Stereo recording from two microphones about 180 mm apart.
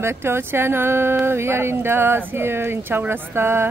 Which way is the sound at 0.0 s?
15° right (ahead or behind).